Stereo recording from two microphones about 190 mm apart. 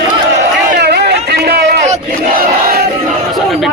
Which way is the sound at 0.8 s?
60° right (ahead or behind).